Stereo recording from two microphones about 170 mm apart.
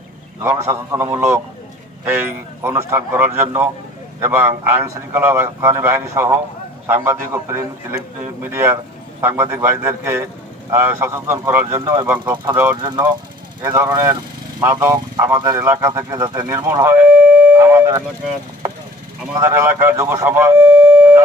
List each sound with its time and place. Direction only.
0.4 s speech: 15° right (ahead or behind)
12.7 s speech: 25° right (ahead or behind)
13.6 s speech: 15° right (ahead or behind)
17.4 s a sound: 15° right (ahead or behind)
19.4 s speech: 15° right (ahead or behind)